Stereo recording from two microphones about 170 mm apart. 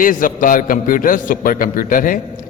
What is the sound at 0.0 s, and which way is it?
A man's voice, 55° left (ahead or behind).